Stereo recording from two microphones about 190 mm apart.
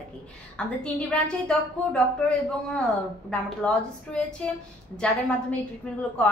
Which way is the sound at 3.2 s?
5° left (ahead or behind).